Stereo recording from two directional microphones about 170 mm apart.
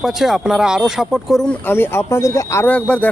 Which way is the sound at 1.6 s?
15° left (ahead or behind).